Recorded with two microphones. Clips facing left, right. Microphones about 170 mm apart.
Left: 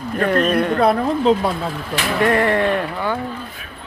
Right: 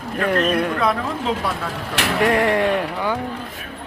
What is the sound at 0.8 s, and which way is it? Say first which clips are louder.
Speech: left 5 dB; 35° left (ahead or behind).